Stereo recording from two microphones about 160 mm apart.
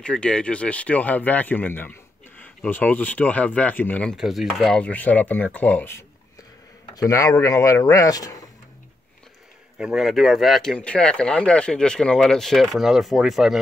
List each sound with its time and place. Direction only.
0.0 s speech: 5° left (ahead or behind)
7.0 s speech: 20° left (ahead or behind)
9.8 s speech: 5° right (ahead or behind)